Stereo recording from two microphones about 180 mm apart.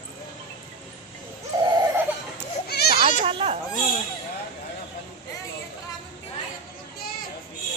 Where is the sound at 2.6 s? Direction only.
60° left (ahead or behind).